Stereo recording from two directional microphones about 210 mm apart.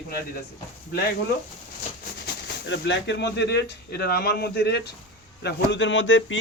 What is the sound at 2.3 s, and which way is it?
Speech, 55° left (ahead or behind).